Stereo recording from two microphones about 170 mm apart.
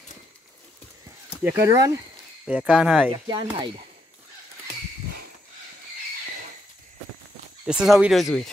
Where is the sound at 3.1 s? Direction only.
30° right (ahead or behind).